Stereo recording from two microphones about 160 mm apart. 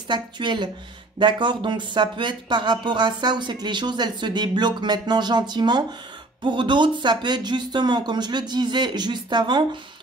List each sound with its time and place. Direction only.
0.1 s speech: 30° right (ahead or behind)